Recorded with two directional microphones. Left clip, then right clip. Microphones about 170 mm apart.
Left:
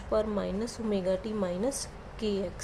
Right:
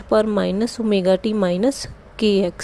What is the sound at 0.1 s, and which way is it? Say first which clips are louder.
A woman's voice: right 12 dB; 50° right (ahead or behind).